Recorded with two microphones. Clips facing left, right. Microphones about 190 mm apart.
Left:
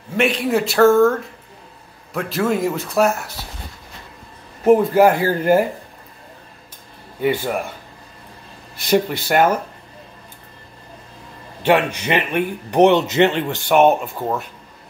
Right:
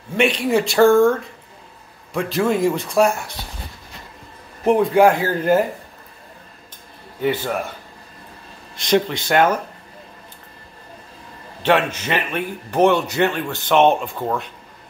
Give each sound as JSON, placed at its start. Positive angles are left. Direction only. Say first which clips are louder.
{"t": 0.2, "sound": "speech", "louder": "even", "side_deg": 0}
{"t": 2.1, "sound": "speech", "louder": "right 1 dB", "side_deg": 0}
{"t": 4.6, "sound": "a man's voice", "louder": "left 1 dB", "side_deg": 0}
{"t": 7.2, "sound": "a man's voice", "louder": "left 1 dB", "side_deg": 10}
{"t": 8.7, "sound": "a man's voice", "louder": "left 1 dB", "side_deg": 10}
{"t": 11.6, "sound": "a man's voice", "louder": "left 1 dB", "side_deg": 10}
{"t": 13.7, "sound": "a man's voice", "louder": "left 1 dB", "side_deg": 10}